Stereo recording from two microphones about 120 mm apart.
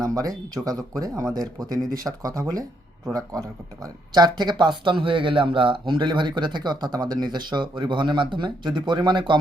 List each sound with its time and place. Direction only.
0.0 s speech: 30° right (ahead or behind)